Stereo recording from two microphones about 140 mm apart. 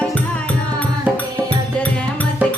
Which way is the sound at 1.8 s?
10° left (ahead or behind).